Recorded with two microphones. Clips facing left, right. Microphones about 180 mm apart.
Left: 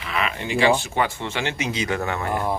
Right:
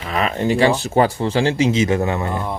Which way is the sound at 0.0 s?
40° right (ahead or behind).